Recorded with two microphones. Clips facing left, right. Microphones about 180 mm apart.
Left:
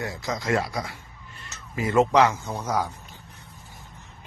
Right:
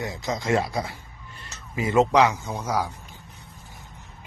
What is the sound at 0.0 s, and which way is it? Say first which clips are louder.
A man's voice: right 1 dB; 20° right (ahead or behind).